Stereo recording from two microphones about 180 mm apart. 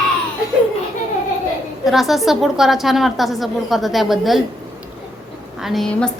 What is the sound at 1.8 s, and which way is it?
A woman's voice, centre (ahead or behind).